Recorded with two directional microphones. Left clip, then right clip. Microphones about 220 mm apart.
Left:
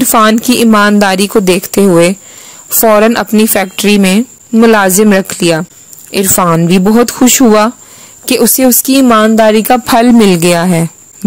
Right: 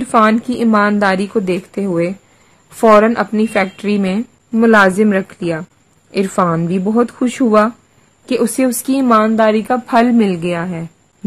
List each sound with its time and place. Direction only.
0.0 s a woman's voice: 35° left (ahead or behind); by 10.9 s 50° left (ahead or behind)